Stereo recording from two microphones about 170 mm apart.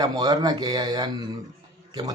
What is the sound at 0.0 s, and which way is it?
Speech, 25° right (ahead or behind).